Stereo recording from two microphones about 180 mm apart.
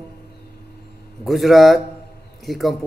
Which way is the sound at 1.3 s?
Centre (ahead or behind).